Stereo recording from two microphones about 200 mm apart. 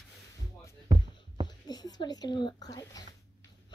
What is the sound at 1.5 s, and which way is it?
Speech, 20° left (ahead or behind).